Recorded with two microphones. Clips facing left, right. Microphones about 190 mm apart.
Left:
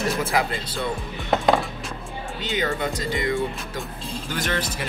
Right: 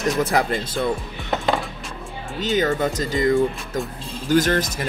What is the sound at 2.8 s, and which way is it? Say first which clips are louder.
Speech: right 5 dB; 45° right (ahead or behind).